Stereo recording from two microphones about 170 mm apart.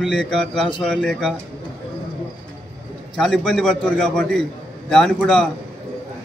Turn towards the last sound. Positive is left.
turn(degrees=5)  # may be behind; listen again after turning